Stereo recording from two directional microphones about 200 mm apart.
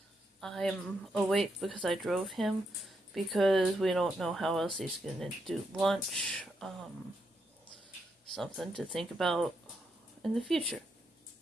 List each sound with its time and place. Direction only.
0.4 s speech: centre (ahead or behind)
8.3 s speech: centre (ahead or behind)